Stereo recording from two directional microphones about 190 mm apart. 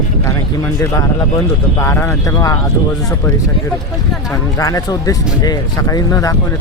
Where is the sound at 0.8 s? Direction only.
15° left (ahead or behind).